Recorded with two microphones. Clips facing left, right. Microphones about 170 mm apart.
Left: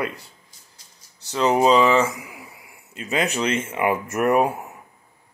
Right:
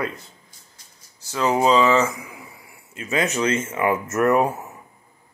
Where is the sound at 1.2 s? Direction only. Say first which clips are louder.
Left 1 dB; 20° left (ahead or behind).